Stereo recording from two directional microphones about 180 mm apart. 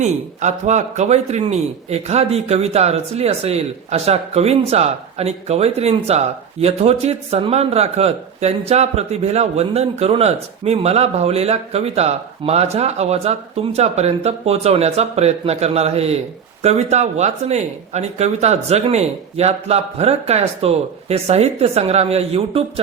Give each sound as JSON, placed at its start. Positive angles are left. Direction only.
{"t": 0.0, "sound": "a man's voice", "side_deg": -40}